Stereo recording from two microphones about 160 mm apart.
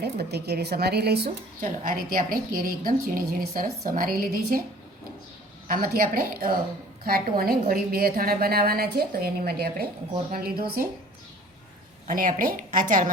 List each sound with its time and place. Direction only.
0.0 s speech: 90° right
1.8 s a woman's voice: 65° right (ahead or behind)
5.6 s a woman's voice: 65° right (ahead or behind)
12.0 s a woman's voice: 60° right (ahead or behind)